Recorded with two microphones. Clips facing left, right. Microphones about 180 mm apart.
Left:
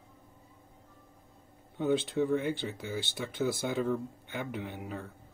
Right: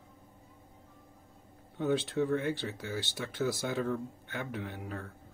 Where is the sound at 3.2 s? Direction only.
5° left (ahead or behind).